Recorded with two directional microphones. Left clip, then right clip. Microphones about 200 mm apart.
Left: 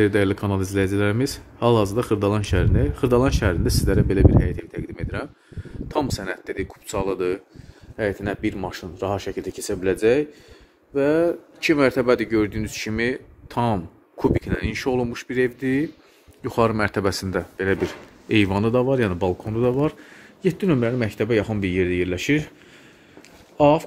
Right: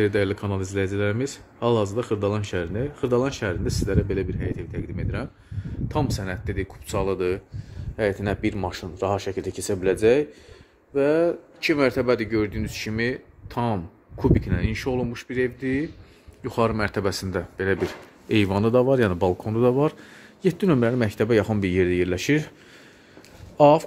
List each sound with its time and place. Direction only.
0.0 s speech: 15° left (ahead or behind); by 7.4 s centre (ahead or behind)
8.0 s speech: 10° right (ahead or behind)
23.6 s speech: 15° right (ahead or behind)